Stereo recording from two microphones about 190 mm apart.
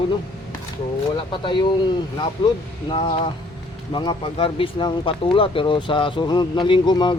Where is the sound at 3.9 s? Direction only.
25° left (ahead or behind).